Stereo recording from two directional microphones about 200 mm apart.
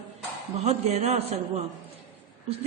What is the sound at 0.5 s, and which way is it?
A woman's voice, 30° right (ahead or behind).